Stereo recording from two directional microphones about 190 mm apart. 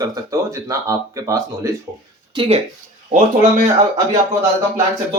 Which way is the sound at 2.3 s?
25° right (ahead or behind).